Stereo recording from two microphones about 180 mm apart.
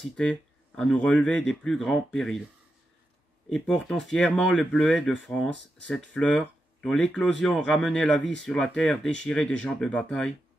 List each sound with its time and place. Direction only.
0.0 s speech: 5° left (ahead or behind)
3.4 s speech: 5° left (ahead or behind)